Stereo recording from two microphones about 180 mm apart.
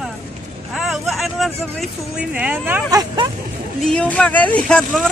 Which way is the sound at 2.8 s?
20° right (ahead or behind).